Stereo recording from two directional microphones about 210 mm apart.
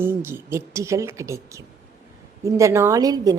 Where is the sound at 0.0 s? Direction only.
10° right (ahead or behind).